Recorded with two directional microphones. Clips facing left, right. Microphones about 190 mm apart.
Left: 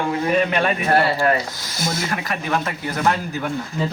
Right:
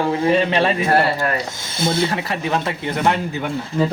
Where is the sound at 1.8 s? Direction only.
30° right (ahead or behind).